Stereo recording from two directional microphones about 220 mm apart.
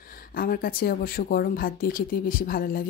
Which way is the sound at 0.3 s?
40° left (ahead or behind).